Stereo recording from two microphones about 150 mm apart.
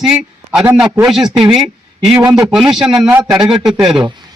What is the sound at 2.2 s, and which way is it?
Speech, 25° right (ahead or behind).